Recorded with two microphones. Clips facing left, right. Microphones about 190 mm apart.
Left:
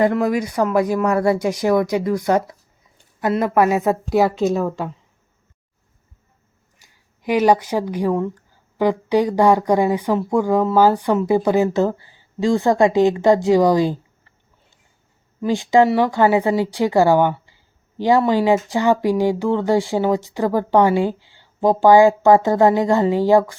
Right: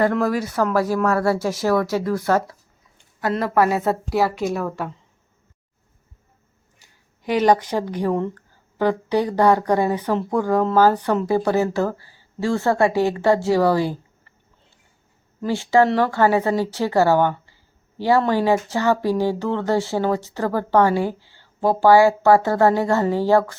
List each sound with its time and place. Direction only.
0.0 s speech: 15° left (ahead or behind)
6.8 s speech: 10° left (ahead or behind)
15.4 s speech: 15° left (ahead or behind)